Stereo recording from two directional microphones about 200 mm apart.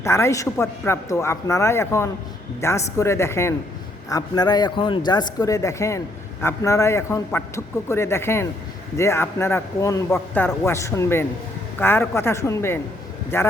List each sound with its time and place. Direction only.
0.0 s a man's voice: 15° left (ahead or behind)